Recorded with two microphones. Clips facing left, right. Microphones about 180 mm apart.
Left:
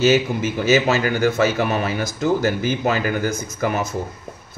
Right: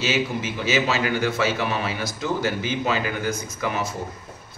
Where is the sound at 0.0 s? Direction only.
45° left (ahead or behind).